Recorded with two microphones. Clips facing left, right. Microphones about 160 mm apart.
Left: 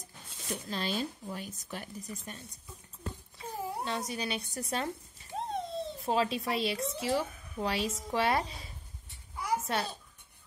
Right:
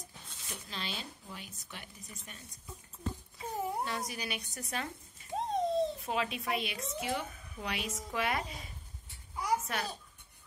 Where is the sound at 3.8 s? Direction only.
25° left (ahead or behind).